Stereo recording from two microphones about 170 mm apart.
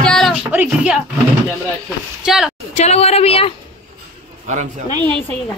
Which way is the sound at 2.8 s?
40° left (ahead or behind).